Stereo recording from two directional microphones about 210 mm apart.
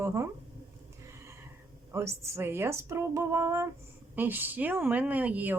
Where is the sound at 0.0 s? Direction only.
15° right (ahead or behind).